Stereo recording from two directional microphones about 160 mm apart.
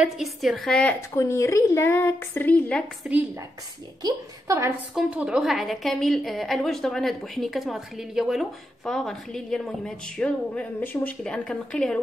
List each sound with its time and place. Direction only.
0.0 s a woman's voice: centre (ahead or behind)
1.1 s a woman's voice: 15° left (ahead or behind)
3.0 s speech: 10° right (ahead or behind)
4.0 s a woman's voice: 20° right (ahead or behind)
4.9 s a woman's voice: 5° right (ahead or behind)